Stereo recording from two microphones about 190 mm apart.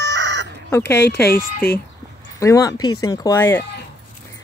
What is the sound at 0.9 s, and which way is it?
Speech, 60° left (ahead or behind).